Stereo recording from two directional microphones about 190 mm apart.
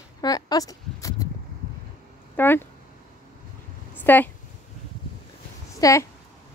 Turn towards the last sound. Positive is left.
turn(degrees=20)  # may be behind; listen again after turning